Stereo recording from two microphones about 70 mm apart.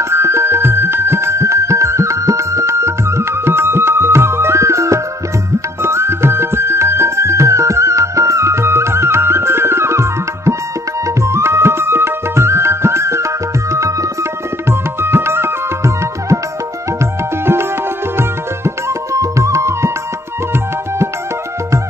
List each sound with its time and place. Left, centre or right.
0.1 s music: right
14.7 s music: right
19.1 s music: right